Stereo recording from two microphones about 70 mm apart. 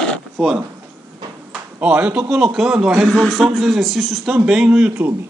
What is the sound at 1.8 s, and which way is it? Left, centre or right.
A man's voice, centre.